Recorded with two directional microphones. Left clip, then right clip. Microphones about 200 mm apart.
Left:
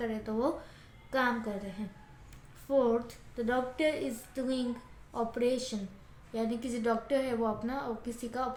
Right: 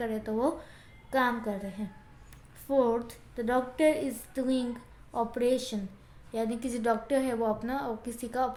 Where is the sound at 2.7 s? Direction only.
45° right (ahead or behind).